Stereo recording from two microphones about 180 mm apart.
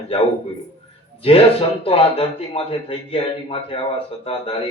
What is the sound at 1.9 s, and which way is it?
A man's voice, 30° left (ahead or behind).